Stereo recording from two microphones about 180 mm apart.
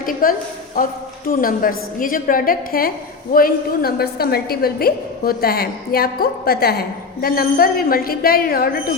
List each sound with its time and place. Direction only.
0.0 s a woman's voice: 50° left (ahead or behind)